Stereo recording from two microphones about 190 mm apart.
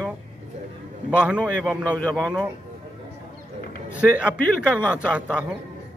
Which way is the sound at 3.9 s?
5° right (ahead or behind).